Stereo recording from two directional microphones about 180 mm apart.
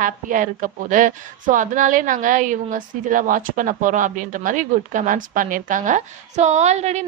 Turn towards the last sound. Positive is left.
turn(degrees=-40)  # may be behind; listen again after turning